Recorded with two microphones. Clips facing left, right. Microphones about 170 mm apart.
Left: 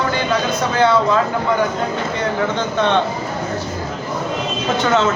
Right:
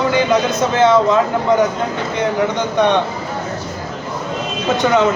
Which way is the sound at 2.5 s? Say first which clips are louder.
Right 3 dB; 15° right (ahead or behind).